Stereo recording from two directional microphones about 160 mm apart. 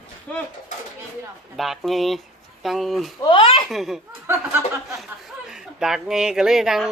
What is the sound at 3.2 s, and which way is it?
Speech, 30° left (ahead or behind).